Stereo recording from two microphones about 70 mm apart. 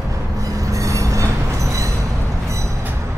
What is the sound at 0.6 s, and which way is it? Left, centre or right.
Train, right.